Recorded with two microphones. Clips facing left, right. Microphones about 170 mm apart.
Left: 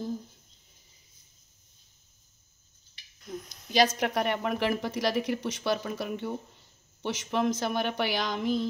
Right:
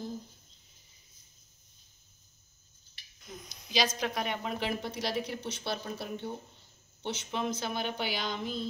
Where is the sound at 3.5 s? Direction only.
55° left (ahead or behind).